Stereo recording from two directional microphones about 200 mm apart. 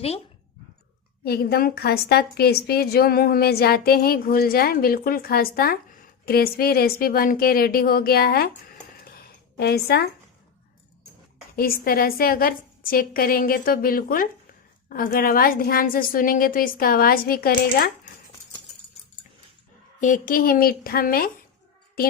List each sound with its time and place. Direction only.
1.2 s a woman's voice: 50° left (ahead or behind)
11.5 s a woman's voice: 45° left (ahead or behind)
20.0 s a woman's voice: 40° left (ahead or behind)